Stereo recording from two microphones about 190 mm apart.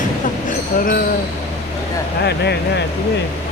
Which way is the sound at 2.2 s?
60° left (ahead or behind).